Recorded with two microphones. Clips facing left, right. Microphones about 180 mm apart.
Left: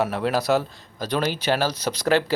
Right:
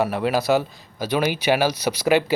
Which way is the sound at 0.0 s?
Centre (ahead or behind).